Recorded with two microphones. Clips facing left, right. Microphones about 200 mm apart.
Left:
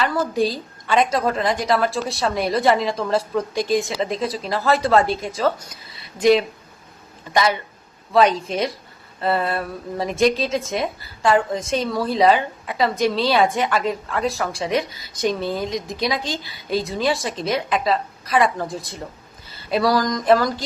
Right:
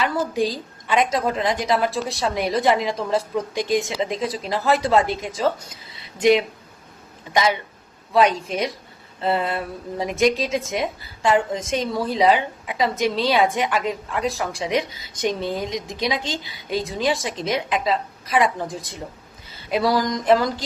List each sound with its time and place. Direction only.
0.0 s a woman's voice: 15° right (ahead or behind)
8.1 s a woman's voice: 15° right (ahead or behind)